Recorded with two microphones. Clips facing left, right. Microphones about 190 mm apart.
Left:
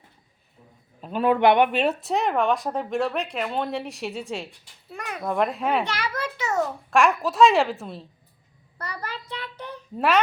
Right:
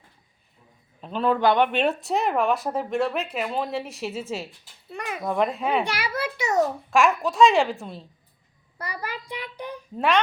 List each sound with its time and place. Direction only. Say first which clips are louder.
1.0 s speech: left 2 dB; 10° left (ahead or behind)
1.4 s speech: left 3 dB; 25° left (ahead or behind)
1.6 s speech: even; 5° left (ahead or behind)
5.8 s a child's voice: right 1 dB; 10° right (ahead or behind)
6.9 s speech: left 1 dB; centre (ahead or behind)
8.8 s child singing: right 1 dB; 10° right (ahead or behind)